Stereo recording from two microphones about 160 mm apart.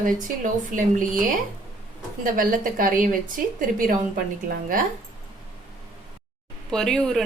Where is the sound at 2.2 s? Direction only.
60° right (ahead or behind).